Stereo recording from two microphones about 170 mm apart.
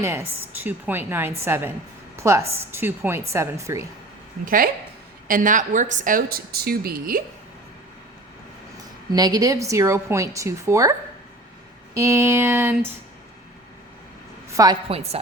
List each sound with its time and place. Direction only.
0.0 s a woman's voice: 15° right (ahead or behind)
4.4 s a woman's voice: 55° right (ahead or behind)
8.8 s speech: 20° right (ahead or behind)
11.9 s a woman's voice: 15° right (ahead or behind)
14.5 s a woman's voice: 20° right (ahead or behind)
14.8 s speech: 35° right (ahead or behind)